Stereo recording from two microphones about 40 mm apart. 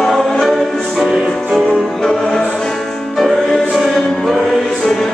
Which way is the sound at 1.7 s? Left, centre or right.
Centre.